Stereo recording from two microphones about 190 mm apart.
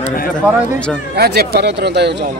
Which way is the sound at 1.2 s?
55° right (ahead or behind).